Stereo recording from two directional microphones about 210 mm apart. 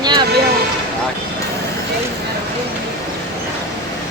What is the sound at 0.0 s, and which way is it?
Vehicle, 20° right (ahead or behind).